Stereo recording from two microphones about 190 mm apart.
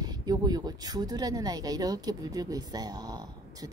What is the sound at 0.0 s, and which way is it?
Speech, 20° right (ahead or behind).